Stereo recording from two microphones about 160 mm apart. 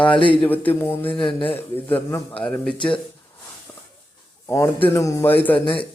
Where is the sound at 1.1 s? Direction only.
30° left (ahead or behind).